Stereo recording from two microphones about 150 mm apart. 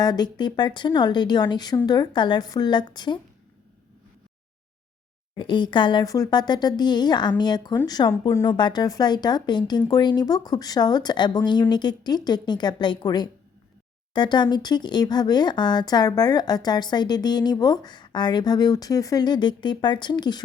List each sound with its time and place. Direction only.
0.0 s speech: 25° left (ahead or behind)
5.4 s speech: 30° left (ahead or behind)